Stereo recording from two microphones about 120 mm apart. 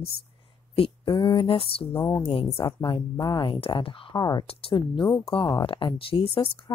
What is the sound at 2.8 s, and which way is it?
Speech, 40° left (ahead or behind).